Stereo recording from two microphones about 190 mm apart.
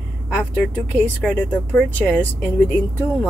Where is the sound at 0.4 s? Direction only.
10° left (ahead or behind).